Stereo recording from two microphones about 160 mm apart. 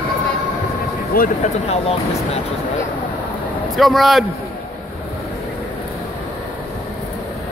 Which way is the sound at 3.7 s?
Centre (ahead or behind).